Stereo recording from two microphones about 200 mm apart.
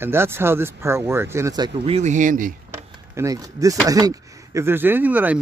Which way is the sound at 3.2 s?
15° right (ahead or behind).